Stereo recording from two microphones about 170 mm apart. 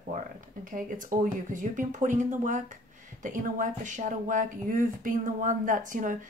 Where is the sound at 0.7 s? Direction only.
50° right (ahead or behind).